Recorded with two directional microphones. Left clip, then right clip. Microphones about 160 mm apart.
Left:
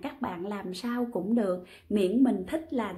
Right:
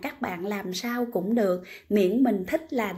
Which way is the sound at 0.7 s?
20° right (ahead or behind).